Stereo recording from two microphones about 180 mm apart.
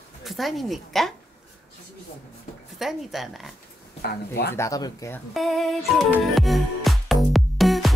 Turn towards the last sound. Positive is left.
turn(degrees=0)  # may be behind; listen again after turning